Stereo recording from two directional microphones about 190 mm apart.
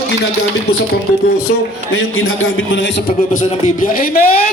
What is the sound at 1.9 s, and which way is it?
Speech, 90° left.